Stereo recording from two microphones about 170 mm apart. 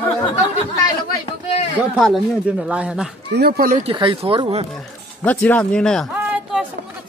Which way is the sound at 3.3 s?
65° right (ahead or behind).